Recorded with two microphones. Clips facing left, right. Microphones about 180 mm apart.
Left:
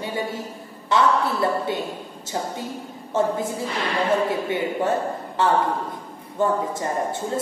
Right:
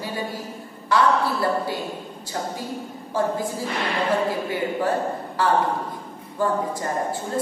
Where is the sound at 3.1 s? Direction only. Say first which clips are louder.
Left 2 dB; 25° left (ahead or behind).